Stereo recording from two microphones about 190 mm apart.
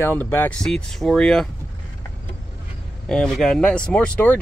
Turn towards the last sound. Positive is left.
turn(degrees=5)  # may be behind; listen again after turning